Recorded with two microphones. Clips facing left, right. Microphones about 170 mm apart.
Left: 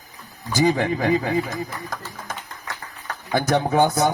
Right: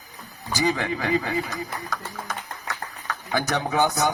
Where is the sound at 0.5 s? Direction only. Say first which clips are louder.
Left 5 dB; 50° left (ahead or behind).